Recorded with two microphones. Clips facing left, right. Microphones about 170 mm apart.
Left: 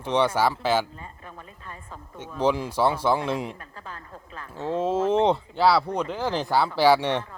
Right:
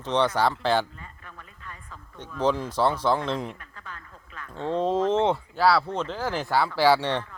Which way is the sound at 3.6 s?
35° left (ahead or behind).